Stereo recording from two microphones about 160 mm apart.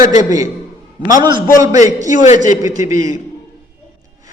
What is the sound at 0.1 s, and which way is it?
Speech, 50° left (ahead or behind).